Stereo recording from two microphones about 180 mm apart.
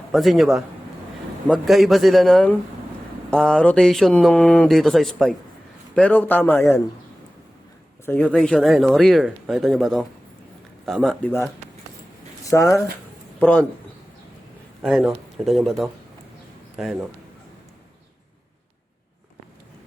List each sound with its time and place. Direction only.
0.1 s a man's voice: centre (ahead or behind)
8.0 s speech: 5° left (ahead or behind)
12.5 s a man's voice: 15° left (ahead or behind)
14.8 s speech: centre (ahead or behind)